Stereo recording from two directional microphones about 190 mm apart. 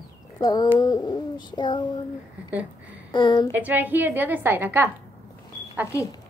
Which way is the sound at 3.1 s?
25° left (ahead or behind).